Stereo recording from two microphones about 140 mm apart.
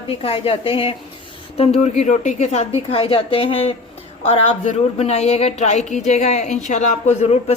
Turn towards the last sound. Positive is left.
turn(degrees=55)  # may be behind; listen again after turning